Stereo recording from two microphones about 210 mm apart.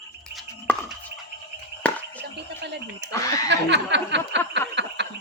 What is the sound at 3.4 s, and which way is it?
Chuckle, 55° right (ahead or behind).